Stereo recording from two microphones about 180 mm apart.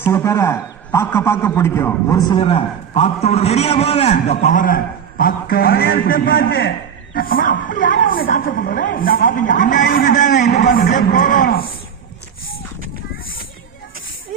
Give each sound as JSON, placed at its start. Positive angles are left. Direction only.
{"t": 0.1, "sound": "a man's voice", "side_deg": 15}